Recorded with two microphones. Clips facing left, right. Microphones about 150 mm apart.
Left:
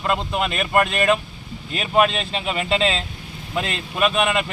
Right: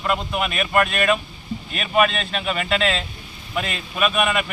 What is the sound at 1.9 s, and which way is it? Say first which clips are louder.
Speech: left 1 dB; 25° left (ahead or behind).